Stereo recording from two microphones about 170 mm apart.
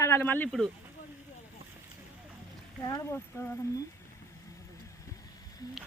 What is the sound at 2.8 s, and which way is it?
Speech, 15° left (ahead or behind).